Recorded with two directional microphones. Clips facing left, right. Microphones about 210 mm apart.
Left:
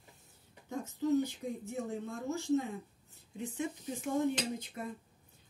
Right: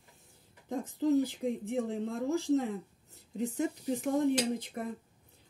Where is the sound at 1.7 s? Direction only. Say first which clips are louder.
Right 5 dB; 90° right.